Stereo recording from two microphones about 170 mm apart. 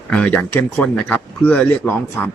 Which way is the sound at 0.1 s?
10° left (ahead or behind).